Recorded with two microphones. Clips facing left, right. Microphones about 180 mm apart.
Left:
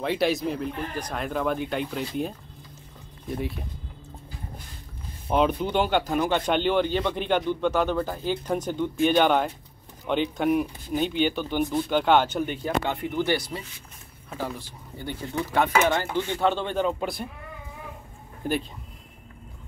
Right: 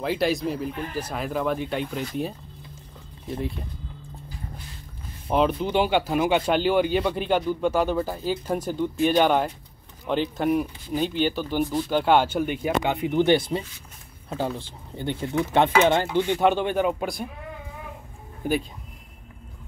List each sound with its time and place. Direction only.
0.0 s speech: centre (ahead or behind)
5.3 s speech: centre (ahead or behind)